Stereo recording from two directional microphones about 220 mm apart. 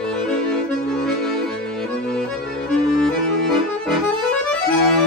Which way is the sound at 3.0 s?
Centre (ahead or behind).